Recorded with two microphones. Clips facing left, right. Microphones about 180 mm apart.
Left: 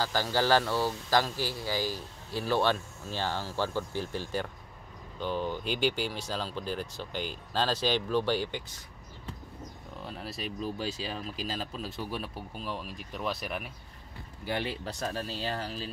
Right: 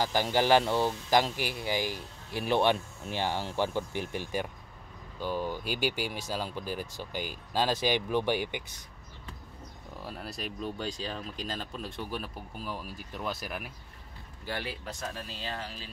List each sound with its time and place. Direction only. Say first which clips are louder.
0.0 s speech: right 1 dB; 15° right (ahead or behind)
10.0 s speech: left 1 dB; centre (ahead or behind)
14.4 s speech: left 4 dB; 20° left (ahead or behind); by 15.9 s 35° left (ahead or behind)